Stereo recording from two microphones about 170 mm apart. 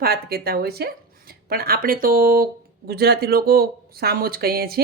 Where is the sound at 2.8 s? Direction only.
70° right (ahead or behind).